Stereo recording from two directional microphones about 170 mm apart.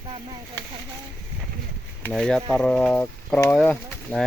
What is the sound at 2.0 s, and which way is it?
Speech, 5° left (ahead or behind).